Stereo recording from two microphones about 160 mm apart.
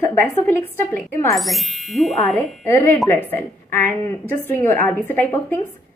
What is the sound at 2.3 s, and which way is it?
A woman's voice, 15° left (ahead or behind).